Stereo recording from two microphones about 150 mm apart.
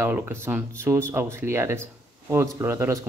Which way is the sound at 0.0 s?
15° right (ahead or behind).